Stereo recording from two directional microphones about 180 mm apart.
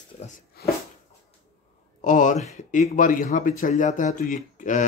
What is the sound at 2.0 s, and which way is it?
Speech, 45° left (ahead or behind).